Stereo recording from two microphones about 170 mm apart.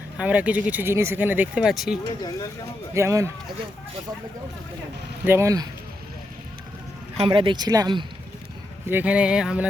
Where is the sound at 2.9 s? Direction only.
15° right (ahead or behind).